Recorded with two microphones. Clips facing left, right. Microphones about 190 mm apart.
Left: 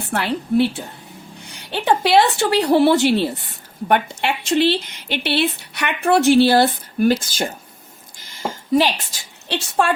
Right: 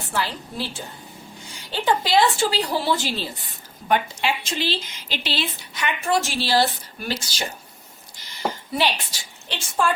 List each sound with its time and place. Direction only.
0.1 s a woman's voice: 60° left (ahead or behind)
8.2 s a sound: 45° left (ahead or behind)
8.7 s a woman's voice: 45° left (ahead or behind)
9.5 s speech: 70° left (ahead or behind)